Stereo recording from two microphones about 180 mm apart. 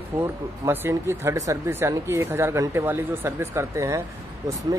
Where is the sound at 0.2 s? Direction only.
15° right (ahead or behind).